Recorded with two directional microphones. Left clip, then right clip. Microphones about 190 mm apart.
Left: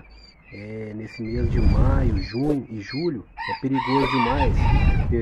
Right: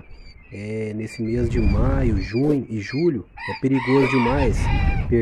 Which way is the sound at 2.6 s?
35° right (ahead or behind).